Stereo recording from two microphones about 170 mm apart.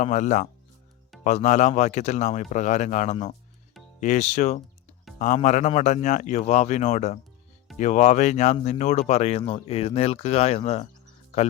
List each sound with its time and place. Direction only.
0.0 s a man's voice: 45° left (ahead or behind)